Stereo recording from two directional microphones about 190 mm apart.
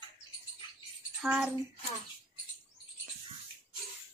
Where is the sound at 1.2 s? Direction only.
10° right (ahead or behind).